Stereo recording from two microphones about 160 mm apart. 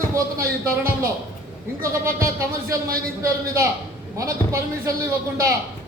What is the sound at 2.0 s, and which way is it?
Speech, 15° right (ahead or behind).